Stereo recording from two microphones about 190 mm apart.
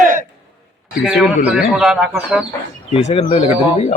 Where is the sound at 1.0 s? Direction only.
5° right (ahead or behind).